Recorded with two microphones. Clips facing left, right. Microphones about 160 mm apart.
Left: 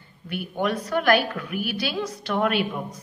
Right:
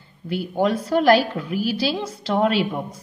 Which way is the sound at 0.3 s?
30° right (ahead or behind).